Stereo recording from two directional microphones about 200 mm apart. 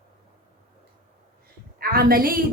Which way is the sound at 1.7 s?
50° right (ahead or behind).